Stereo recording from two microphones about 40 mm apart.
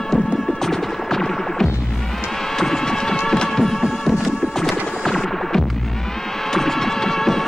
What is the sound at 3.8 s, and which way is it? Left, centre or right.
Music, centre.